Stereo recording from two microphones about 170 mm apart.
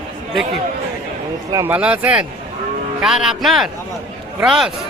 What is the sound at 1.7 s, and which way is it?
A man's voice, 10° right (ahead or behind).